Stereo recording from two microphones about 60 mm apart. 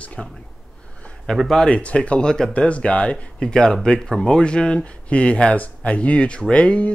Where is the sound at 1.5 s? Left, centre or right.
Centre.